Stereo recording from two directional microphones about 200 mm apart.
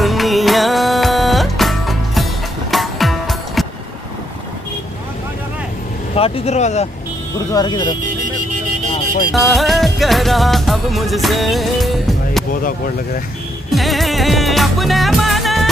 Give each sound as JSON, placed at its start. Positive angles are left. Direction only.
{"t": 0.0, "sound": "music", "side_deg": 0}
{"t": 6.1, "sound": "speech", "side_deg": 30}
{"t": 7.5, "sound": "speech", "side_deg": 20}
{"t": 9.3, "sound": "music", "side_deg": 0}
{"t": 13.7, "sound": "music", "side_deg": 0}